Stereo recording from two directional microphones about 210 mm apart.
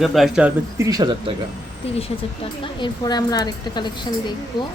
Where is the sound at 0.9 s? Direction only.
20° right (ahead or behind).